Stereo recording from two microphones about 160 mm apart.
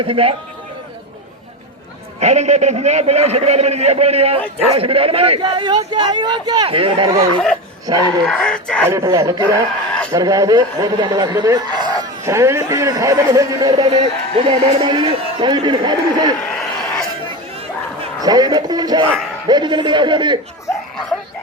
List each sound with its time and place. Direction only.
0.0 s a man's voice: 35° right (ahead or behind)
2.2 s a man's voice: 45° right (ahead or behind); by 8.0 s 25° right (ahead or behind)
8.2 s speech: 5° left (ahead or behind)
8.9 s a man's voice: 20° right (ahead or behind)
13.9 s a man's voice: 40° right (ahead or behind)
14.8 s a man's voice: 30° right (ahead or behind)
16.5 s a sound: 5° left (ahead or behind)
18.2 s a man's voice: 25° right (ahead or behind)